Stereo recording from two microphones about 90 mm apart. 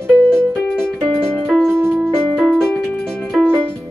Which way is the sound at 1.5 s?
5° left (ahead or behind).